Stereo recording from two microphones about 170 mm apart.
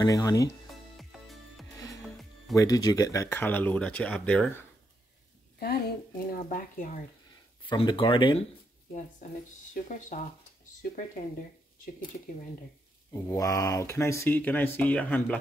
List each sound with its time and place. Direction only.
0.0 s speech: 20° left (ahead or behind)
0.9 s music: centre (ahead or behind)
2.5 s speech: 20° left (ahead or behind)
5.6 s a woman's voice: 60° left (ahead or behind)
7.6 s speech: 30° left (ahead or behind)
9.8 s speech: 50° left (ahead or behind)
13.1 s speech: 20° left (ahead or behind)